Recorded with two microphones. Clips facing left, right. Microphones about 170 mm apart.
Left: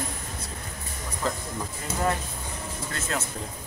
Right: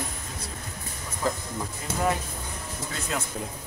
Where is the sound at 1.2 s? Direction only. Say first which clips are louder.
Right 2 dB; 10° right (ahead or behind).